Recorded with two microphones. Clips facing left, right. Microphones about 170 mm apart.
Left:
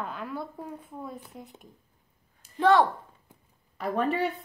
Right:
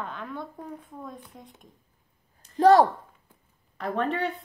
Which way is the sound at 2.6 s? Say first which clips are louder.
Right 4 dB; 40° right (ahead or behind).